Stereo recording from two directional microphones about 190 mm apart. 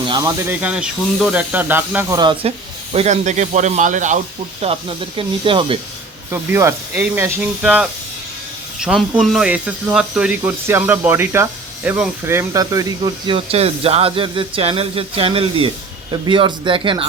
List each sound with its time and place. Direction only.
0.0 s speech: 20° right (ahead or behind)
0.5 s speech: 5° right (ahead or behind); by 4.2 s 40° right (ahead or behind)
4.6 s speech: 30° right (ahead or behind)
6.3 s speech: 15° right (ahead or behind)